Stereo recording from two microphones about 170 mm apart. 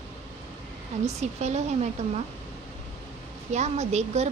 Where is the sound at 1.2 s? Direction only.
40° right (ahead or behind).